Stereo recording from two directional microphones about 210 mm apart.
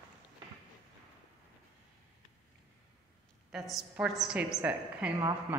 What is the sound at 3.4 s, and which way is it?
A woman's voice, centre (ahead or behind).